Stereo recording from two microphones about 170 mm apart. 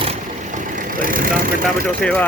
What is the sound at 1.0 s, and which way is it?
Vehicle, 55° right (ahead or behind).